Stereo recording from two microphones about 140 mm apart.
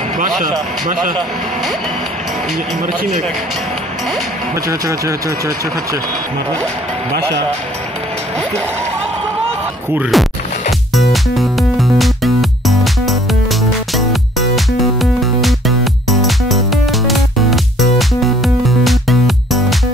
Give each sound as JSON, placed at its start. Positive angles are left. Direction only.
{"t": 4.6, "sound": "speech", "side_deg": -20}
{"t": 10.1, "sound": "speech", "side_deg": 0}
{"t": 11.0, "sound": "music", "side_deg": 0}